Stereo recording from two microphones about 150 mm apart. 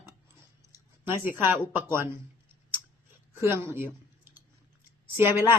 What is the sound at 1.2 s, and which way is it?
Speech, 15° right (ahead or behind).